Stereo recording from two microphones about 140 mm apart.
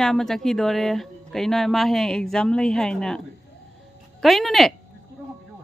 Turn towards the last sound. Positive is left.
turn(degrees=0)  # may be behind; listen again after turning